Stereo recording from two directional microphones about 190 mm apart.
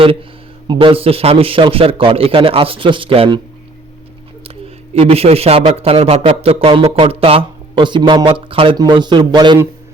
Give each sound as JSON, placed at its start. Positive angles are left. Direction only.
{"t": 0.0, "sound": "a man's voice", "side_deg": -30}
{"t": 4.9, "sound": "a man's voice", "side_deg": -30}